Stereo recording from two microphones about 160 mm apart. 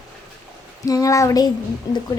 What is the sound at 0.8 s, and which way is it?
A woman's voice, 20° left (ahead or behind).